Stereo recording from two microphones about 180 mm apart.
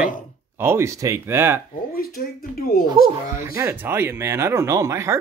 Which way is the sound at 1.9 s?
55° left (ahead or behind).